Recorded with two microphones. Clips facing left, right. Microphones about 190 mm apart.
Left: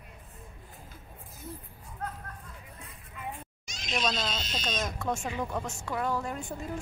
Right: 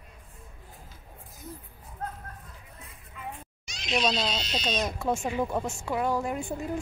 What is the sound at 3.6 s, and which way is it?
Speech, 50° left (ahead or behind).